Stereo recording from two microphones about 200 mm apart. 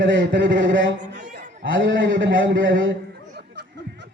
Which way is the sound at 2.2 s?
70° right (ahead or behind).